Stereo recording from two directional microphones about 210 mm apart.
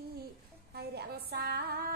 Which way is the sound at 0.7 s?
50° right (ahead or behind).